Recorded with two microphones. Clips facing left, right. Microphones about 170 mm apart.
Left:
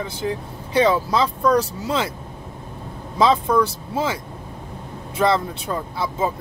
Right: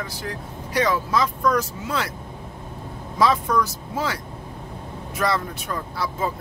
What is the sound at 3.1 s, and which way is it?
Speech, 25° left (ahead or behind).